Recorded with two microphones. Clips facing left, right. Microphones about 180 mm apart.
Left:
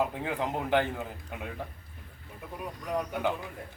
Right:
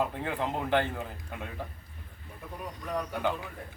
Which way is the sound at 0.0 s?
10° left (ahead or behind).